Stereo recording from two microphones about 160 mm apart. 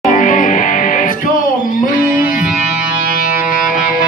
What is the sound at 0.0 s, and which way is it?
Music, 55° left (ahead or behind).